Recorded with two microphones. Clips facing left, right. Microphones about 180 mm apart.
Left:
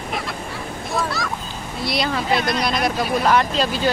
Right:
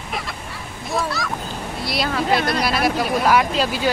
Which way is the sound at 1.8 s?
Centre (ahead or behind).